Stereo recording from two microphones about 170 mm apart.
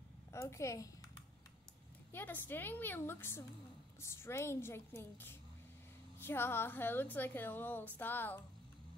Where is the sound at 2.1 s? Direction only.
10° left (ahead or behind).